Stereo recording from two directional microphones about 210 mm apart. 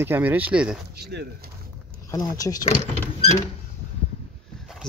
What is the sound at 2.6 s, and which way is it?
Sliding door, 35° left (ahead or behind).